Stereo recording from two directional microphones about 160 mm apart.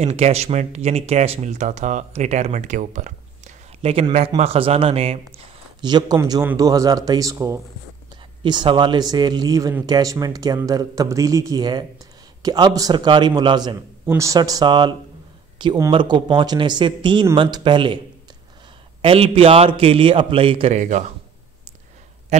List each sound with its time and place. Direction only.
0.0 s a man's voice: 40° right (ahead or behind)
5.8 s a man's voice: 25° right (ahead or behind); by 21.0 s 50° right (ahead or behind)
22.3 s a sound: 45° right (ahead or behind)